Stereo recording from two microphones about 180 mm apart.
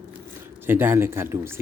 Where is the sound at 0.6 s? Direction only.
10° right (ahead or behind).